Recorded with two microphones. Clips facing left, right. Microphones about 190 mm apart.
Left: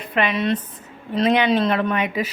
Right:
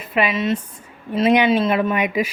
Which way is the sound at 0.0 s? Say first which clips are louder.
Right 1 dB; 5° right (ahead or behind).